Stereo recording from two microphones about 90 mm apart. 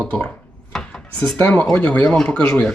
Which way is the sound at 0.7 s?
10° left (ahead or behind).